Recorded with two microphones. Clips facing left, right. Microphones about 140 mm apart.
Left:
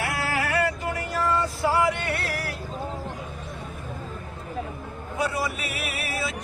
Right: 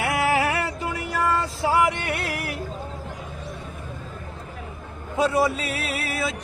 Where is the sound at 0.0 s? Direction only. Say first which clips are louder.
Right 6 dB; 20° right (ahead or behind).